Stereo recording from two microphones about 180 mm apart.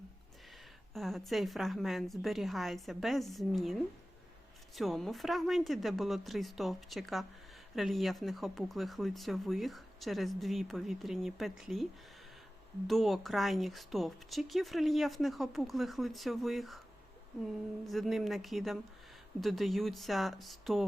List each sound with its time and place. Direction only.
0.9 s speech: centre (ahead or behind)
12.9 s speech: centre (ahead or behind)